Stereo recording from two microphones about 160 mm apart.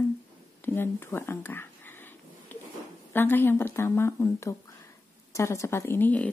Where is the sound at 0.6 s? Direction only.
15° left (ahead or behind).